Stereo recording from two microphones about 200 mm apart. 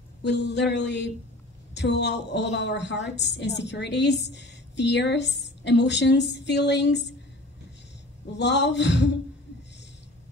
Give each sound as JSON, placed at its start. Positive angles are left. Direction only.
{"t": 0.2, "sound": "a woman's voice", "side_deg": 60}
{"t": 8.3, "sound": "a woman's voice", "side_deg": 60}